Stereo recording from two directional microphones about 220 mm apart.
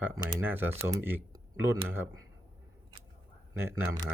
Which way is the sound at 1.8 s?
10° right (ahead or behind).